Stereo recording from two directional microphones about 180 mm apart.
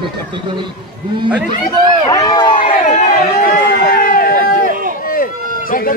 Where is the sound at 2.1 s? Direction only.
20° left (ahead or behind).